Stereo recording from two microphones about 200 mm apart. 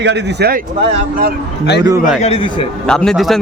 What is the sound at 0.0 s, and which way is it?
Speech, 60° right (ahead or behind).